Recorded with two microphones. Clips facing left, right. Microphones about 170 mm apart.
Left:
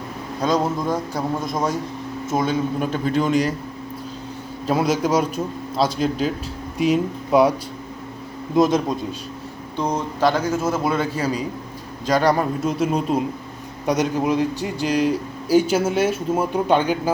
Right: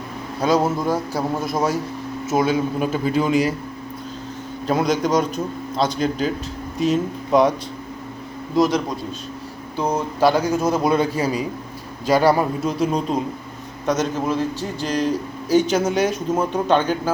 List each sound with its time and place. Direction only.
0.4 s a man's voice: 5° right (ahead or behind)
4.6 s a man's voice: 5° left (ahead or behind)
8.5 s a man's voice: 25° left (ahead or behind)
9.7 s a man's voice: 10° right (ahead or behind)
12.6 s a man's voice: 5° left (ahead or behind)